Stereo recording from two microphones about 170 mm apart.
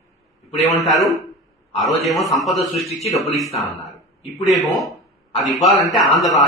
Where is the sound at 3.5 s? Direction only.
20° left (ahead or behind).